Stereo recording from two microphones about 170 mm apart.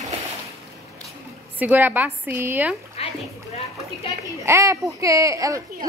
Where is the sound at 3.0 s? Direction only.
35° left (ahead or behind).